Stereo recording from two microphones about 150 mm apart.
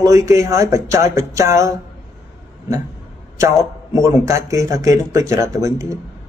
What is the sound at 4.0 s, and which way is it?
A man's voice, 20° right (ahead or behind).